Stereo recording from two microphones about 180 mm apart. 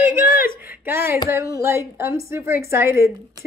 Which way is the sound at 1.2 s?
15° right (ahead or behind).